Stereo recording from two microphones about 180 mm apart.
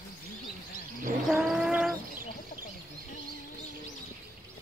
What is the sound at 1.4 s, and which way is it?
Bird, 5° right (ahead or behind).